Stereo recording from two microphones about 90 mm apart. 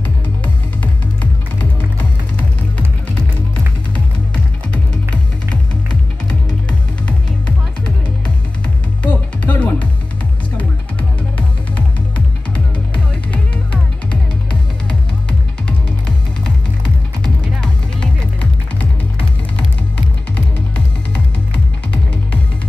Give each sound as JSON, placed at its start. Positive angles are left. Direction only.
{"t": 7.1, "sound": "music", "side_deg": 15}
{"t": 9.0, "sound": "music", "side_deg": 15}
{"t": 14.5, "sound": "music", "side_deg": 10}
{"t": 17.2, "sound": "music", "side_deg": 10}